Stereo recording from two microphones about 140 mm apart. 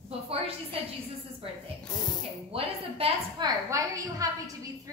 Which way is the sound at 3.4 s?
20° right (ahead or behind).